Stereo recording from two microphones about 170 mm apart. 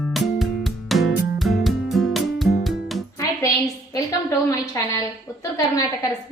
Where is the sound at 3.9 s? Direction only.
20° left (ahead or behind).